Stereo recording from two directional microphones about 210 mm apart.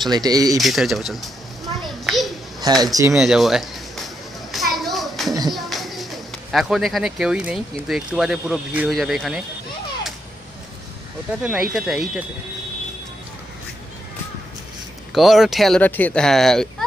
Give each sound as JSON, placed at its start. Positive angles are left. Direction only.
{"t": 0.1, "sound": "a man's voice", "side_deg": -20}
{"t": 0.6, "sound": "speech", "side_deg": 0}
{"t": 2.0, "sound": "a sound", "side_deg": 0}
{"t": 2.6, "sound": "a man's voice", "side_deg": -20}
{"t": 3.2, "sound": "speech", "side_deg": 0}
{"t": 4.5, "sound": "children playing", "side_deg": 0}
{"t": 5.5, "sound": "music", "side_deg": 0}
{"t": 6.5, "sound": "speech", "side_deg": 0}
{"t": 11.4, "sound": "speech", "side_deg": -5}
{"t": 15.1, "sound": "speech", "side_deg": 0}